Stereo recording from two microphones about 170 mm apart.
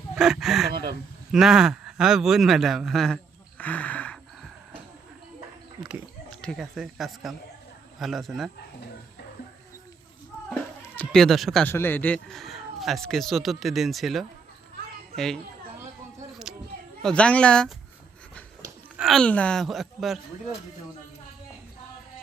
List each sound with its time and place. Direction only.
0.1 s a sound: 5° right (ahead or behind)
1.3 s speech: centre (ahead or behind)
3.6 s gasp: 10° left (ahead or behind)
5.8 s a sound: 5° right (ahead or behind)
6.4 s speech: centre (ahead or behind)
10.5 s a sound: 10° left (ahead or behind)
11.7 s speech: 15° left (ahead or behind)
17.0 s speech: 5° left (ahead or behind)
18.9 s speech: centre (ahead or behind)